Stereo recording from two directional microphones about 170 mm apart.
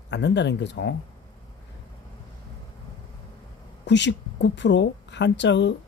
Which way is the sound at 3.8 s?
90° left.